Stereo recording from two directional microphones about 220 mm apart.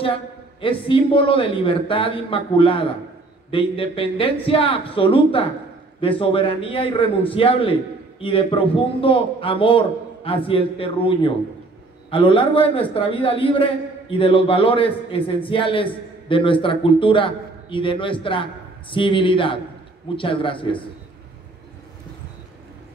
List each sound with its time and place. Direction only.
0.0 s a man's voice: 25° left (ahead or behind)